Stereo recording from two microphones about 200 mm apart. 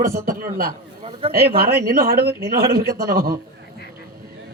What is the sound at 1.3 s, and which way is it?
Speech, 50° right (ahead or behind).